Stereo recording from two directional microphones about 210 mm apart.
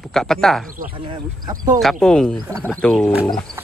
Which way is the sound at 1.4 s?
20° right (ahead or behind).